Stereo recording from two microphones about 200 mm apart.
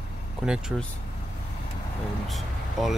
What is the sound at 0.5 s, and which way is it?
Speech, 5° right (ahead or behind).